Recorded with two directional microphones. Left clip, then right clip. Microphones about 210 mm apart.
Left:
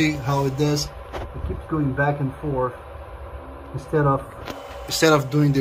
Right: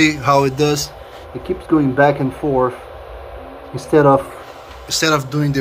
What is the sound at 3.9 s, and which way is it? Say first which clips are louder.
Speech: right 10 dB; 55° right (ahead or behind).